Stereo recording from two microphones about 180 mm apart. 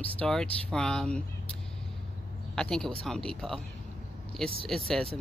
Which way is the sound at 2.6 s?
5° left (ahead or behind).